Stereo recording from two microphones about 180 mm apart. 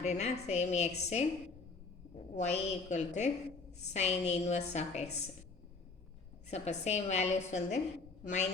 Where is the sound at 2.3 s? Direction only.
40° left (ahead or behind).